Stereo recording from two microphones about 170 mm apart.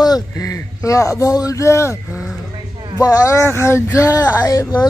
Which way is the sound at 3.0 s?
20° left (ahead or behind).